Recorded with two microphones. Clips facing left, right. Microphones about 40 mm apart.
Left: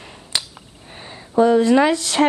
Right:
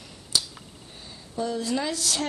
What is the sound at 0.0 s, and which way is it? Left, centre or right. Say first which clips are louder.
Speech: left 3 dB; left.